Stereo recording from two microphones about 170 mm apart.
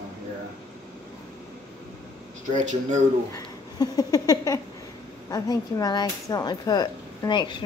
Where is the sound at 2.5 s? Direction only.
45° right (ahead or behind).